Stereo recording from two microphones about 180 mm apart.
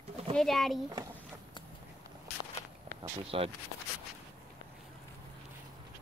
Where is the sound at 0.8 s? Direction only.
20° right (ahead or behind).